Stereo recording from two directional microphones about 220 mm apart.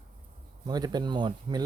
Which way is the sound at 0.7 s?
20° right (ahead or behind).